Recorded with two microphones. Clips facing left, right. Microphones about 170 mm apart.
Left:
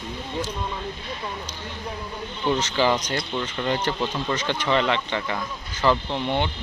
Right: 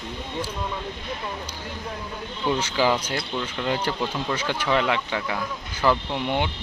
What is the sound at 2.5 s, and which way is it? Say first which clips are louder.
Speech: left 1 dB; 10° right (ahead or behind).